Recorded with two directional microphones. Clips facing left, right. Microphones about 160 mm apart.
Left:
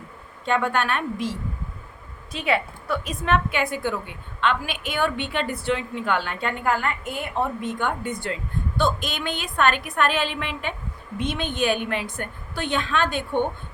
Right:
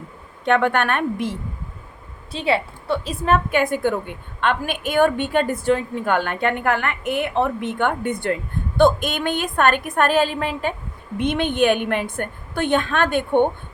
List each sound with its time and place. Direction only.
0.4 s a woman's voice: 65° right (ahead or behind)
2.3 s a woman's voice: 30° right (ahead or behind)
11.2 s a woman's voice: 60° right (ahead or behind)